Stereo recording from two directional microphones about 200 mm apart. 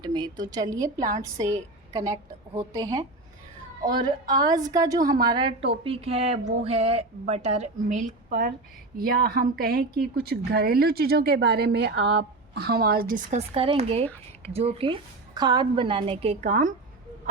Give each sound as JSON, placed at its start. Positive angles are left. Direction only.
{"t": 0.0, "sound": "a woman's voice", "side_deg": -20}